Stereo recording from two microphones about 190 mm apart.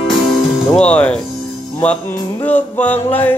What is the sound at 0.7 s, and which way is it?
Speech, 5° left (ahead or behind).